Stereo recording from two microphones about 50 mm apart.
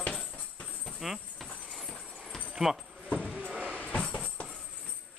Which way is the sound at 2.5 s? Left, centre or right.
Centre.